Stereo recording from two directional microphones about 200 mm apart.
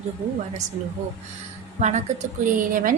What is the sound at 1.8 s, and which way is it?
Speech, 35° right (ahead or behind).